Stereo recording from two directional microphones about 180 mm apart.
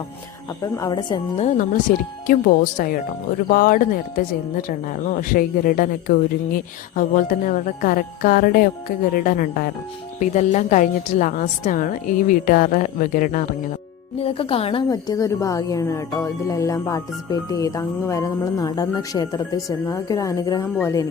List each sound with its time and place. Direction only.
0.6 s speech: 20° left (ahead or behind)
1.9 s speech: 50° left (ahead or behind)
14.2 s speech: 30° left (ahead or behind)
14.8 s speech: 20° left (ahead or behind)